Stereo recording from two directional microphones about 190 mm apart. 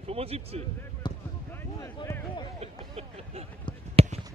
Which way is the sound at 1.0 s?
25° left (ahead or behind).